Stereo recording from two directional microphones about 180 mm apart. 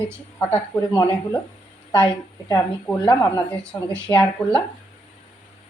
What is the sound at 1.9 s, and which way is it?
Speech, 25° left (ahead or behind).